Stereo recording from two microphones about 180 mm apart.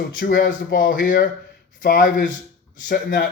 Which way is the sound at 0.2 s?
50° left (ahead or behind).